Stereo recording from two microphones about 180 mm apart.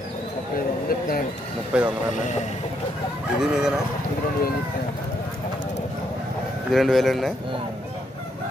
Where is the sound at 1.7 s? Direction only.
5° right (ahead or behind).